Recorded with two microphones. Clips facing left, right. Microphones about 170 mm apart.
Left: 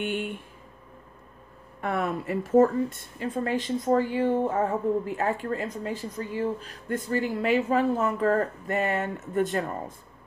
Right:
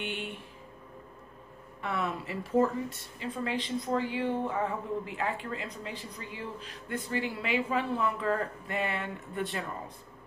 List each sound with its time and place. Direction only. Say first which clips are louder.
0.0 s speech: left 7 dB; 50° left (ahead or behind)
1.8 s a woman's voice: left 5 dB; 50° left (ahead or behind)